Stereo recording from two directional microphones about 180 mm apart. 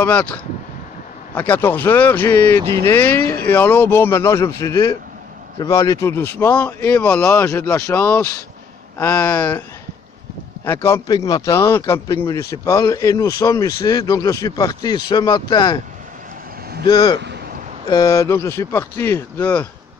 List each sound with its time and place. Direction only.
0.0 s speech: 10° left (ahead or behind)
10.6 s speech: 15° left (ahead or behind)
16.8 s speech: 25° left (ahead or behind); by 19.7 s 10° left (ahead or behind)